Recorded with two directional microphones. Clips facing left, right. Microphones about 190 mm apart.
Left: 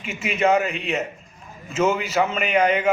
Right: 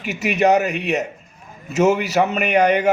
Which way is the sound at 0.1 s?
70° right (ahead or behind).